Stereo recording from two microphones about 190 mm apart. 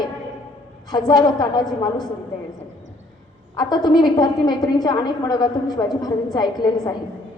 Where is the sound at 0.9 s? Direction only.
20° left (ahead or behind).